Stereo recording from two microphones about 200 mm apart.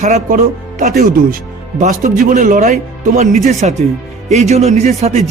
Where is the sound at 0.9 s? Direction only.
50° right (ahead or behind).